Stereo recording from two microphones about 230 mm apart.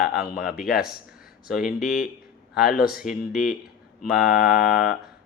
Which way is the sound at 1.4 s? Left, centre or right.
Centre.